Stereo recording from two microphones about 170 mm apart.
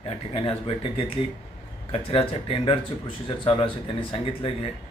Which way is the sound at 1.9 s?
35° left (ahead or behind).